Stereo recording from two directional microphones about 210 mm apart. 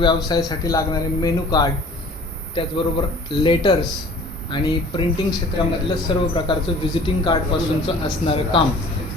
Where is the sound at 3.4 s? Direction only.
20° left (ahead or behind).